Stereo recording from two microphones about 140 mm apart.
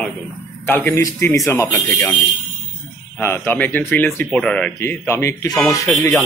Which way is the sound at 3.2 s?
15° left (ahead or behind).